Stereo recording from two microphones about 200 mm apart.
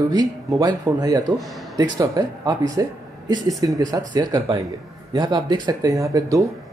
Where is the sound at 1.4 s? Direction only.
Centre (ahead or behind).